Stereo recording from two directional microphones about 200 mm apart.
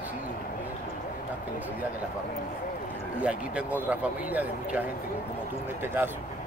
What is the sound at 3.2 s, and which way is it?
Speech, 5° right (ahead or behind).